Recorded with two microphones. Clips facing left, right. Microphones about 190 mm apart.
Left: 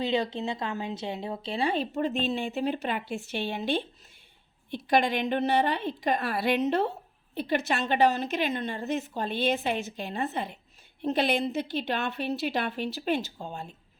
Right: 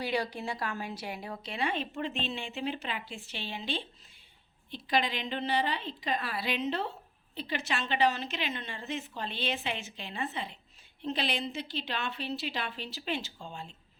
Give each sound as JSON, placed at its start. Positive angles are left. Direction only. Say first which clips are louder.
{"t": 0.0, "sound": "a woman's voice", "louder": "left 5 dB", "side_deg": 20}